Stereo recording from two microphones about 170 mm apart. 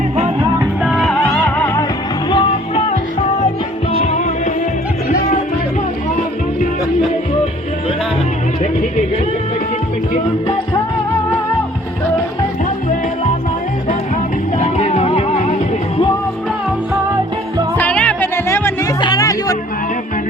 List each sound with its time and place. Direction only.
0.8 s music: centre (ahead or behind)
1.2 s music: 10° left (ahead or behind)
14.6 s music: 40° left (ahead or behind)
17.7 s music: 10° left (ahead or behind)